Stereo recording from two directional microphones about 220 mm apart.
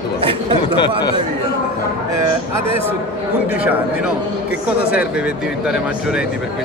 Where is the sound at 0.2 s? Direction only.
25° right (ahead or behind).